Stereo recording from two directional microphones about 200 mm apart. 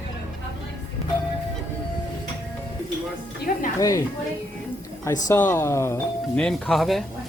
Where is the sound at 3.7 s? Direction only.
15° left (ahead or behind).